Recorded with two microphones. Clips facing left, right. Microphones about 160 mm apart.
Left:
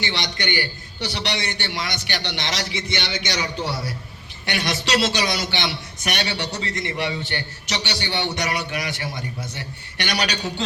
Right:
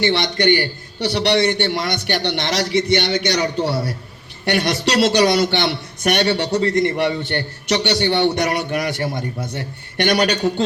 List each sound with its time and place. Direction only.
0.0 s a man's voice: 55° right (ahead or behind)